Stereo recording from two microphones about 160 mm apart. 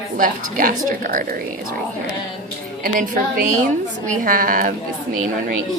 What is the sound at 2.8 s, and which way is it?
A woman's voice, 60° right (ahead or behind).